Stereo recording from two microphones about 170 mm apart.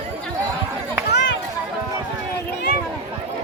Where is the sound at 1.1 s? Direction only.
90° left.